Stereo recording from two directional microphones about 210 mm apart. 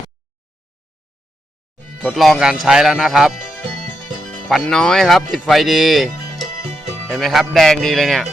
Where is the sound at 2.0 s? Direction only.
Centre (ahead or behind).